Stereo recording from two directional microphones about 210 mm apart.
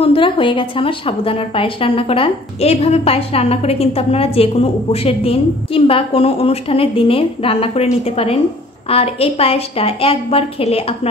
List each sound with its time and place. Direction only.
0.0 s a woman's voice: 25° left (ahead or behind)